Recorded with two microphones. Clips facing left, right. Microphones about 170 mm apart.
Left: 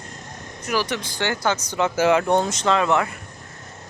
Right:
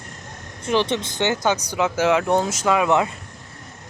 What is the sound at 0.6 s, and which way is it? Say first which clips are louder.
Speech: right 4 dB; 25° right (ahead or behind).